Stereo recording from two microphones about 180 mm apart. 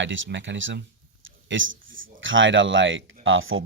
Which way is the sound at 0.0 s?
90° right.